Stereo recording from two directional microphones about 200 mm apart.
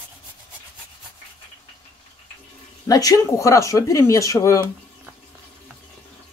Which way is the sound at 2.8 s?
15° left (ahead or behind).